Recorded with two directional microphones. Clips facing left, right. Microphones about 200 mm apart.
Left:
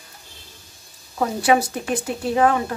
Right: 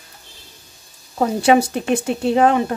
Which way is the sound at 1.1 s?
25° right (ahead or behind).